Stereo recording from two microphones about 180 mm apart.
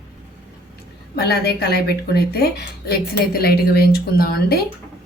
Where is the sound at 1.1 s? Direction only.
60° left (ahead or behind).